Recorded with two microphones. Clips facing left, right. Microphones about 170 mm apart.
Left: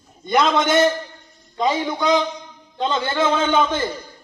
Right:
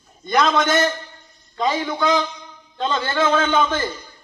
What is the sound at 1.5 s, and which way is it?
A man's voice, 15° left (ahead or behind).